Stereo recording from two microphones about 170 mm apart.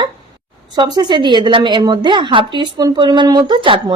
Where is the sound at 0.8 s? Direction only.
25° right (ahead or behind).